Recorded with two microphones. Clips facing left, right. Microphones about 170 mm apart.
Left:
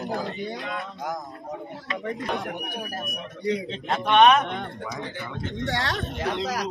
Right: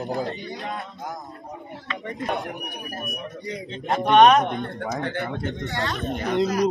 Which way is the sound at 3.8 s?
40° right (ahead or behind).